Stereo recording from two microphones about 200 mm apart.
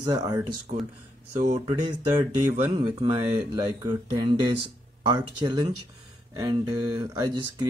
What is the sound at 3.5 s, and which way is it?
Speech, 20° right (ahead or behind).